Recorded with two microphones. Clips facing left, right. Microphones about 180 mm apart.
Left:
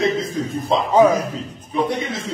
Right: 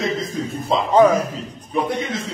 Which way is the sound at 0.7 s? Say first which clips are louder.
Even; 10° left (ahead or behind).